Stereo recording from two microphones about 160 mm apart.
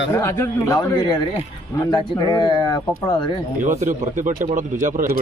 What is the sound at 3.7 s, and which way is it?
Speech, 50° right (ahead or behind).